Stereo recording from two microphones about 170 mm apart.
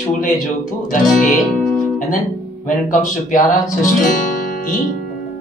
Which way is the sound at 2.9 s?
50° left (ahead or behind).